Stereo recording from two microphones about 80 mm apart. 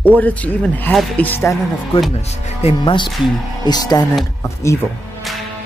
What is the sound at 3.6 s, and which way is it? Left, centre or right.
Speech, left.